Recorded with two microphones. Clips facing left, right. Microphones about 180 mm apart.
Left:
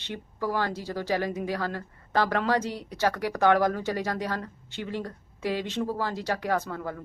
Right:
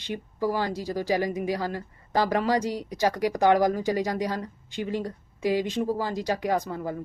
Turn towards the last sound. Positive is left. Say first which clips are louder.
# right 2 dB
turn(degrees=-15)  # may be behind; listen again after turning